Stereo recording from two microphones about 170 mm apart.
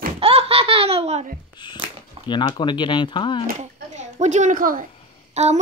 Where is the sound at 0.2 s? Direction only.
35° right (ahead or behind).